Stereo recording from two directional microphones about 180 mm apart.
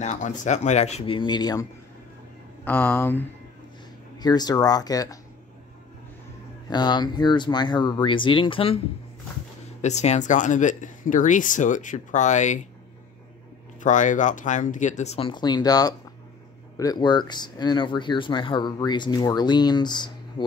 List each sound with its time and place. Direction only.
0.0 s speech: 40° left (ahead or behind); by 1.7 s 20° left (ahead or behind)
2.6 s speech: 10° left (ahead or behind)
4.2 s speech: 20° left (ahead or behind)
6.7 s speech: 25° left (ahead or behind); by 12.6 s 40° left (ahead or behind)
13.7 s speech: 45° left (ahead or behind); by 20.4 s 25° left (ahead or behind)